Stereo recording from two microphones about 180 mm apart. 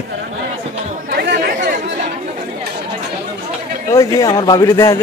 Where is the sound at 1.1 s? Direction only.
65° right (ahead or behind).